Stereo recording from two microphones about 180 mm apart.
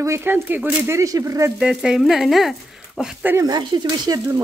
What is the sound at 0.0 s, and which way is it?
Speech, 15° right (ahead or behind).